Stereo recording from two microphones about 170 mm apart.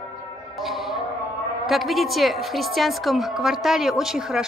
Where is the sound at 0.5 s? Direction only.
Centre (ahead or behind).